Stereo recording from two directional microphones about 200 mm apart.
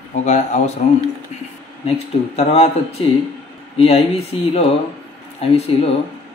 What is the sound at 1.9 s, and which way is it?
Speech, 30° left (ahead or behind).